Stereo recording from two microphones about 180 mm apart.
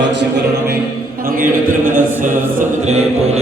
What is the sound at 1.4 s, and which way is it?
Speech, 50° right (ahead or behind).